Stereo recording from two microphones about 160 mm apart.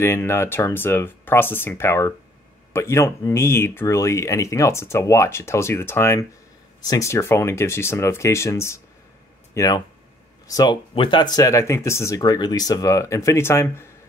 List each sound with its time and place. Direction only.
0.0 s speech: 15° left (ahead or behind); by 11.2 s 30° left (ahead or behind)
11.3 s speech: 20° left (ahead or behind)